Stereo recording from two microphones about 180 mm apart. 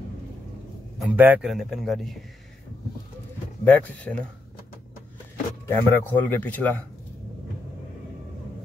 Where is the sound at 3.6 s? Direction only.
10° left (ahead or behind).